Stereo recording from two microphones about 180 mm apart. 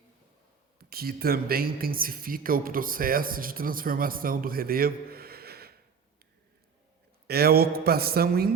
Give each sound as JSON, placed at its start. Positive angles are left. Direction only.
{"t": 0.8, "sound": "speech", "side_deg": -60}
{"t": 7.3, "sound": "speech", "side_deg": -60}